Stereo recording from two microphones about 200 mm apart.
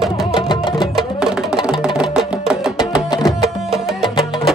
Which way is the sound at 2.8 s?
20° left (ahead or behind).